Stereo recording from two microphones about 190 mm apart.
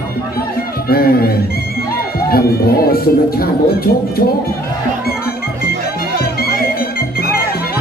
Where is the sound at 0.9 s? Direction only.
50° left (ahead or behind).